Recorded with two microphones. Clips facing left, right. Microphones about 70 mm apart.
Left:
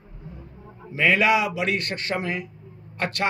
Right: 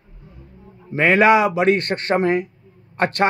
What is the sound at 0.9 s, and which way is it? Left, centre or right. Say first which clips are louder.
A man's voice: right 6 dB; right.